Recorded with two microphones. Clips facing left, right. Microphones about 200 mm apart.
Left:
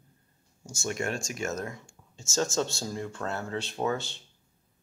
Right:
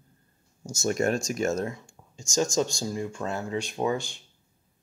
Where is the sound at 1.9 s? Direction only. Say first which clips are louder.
Right 3 dB; 15° right (ahead or behind).